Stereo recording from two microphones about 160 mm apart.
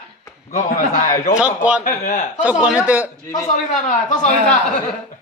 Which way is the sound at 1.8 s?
50° left (ahead or behind).